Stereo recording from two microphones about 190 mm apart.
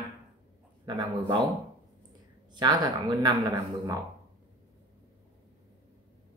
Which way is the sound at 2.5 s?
20° right (ahead or behind).